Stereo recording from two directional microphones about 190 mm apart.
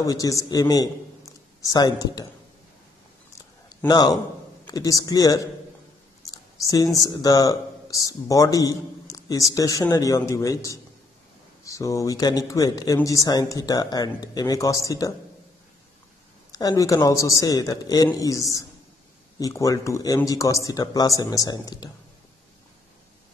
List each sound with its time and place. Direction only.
0.0 s a man's voice: 20° left (ahead or behind)
3.8 s speech: 20° left (ahead or behind)
6.6 s speech: 15° left (ahead or behind)
16.5 s speech: 20° left (ahead or behind)